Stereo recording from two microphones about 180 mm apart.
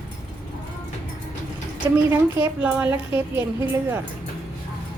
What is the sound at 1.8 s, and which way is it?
A woman's voice, 15° right (ahead or behind).